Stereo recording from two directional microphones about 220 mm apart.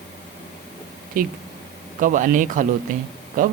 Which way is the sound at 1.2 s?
40° right (ahead or behind).